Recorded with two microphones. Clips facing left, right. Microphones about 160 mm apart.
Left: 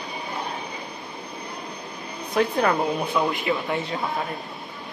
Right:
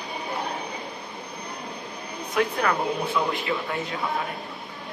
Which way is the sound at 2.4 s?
35° left (ahead or behind).